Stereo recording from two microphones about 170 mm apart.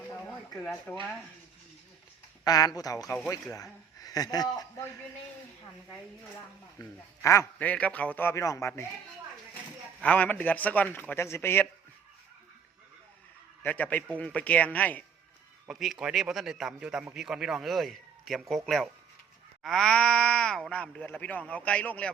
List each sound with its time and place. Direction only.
0.6 s a man's voice: 5° left (ahead or behind)
2.4 s speech: 20° left (ahead or behind)
6.7 s speech: 15° left (ahead or behind)
10.0 s speech: 10° left (ahead or behind)
13.6 s speech: 10° left (ahead or behind)
15.6 s a man's voice: centre (ahead or behind)